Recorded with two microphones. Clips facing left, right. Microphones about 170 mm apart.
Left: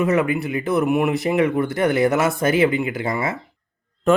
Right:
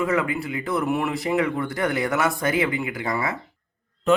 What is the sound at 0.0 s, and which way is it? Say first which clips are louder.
Speech: left 4 dB; 20° left (ahead or behind).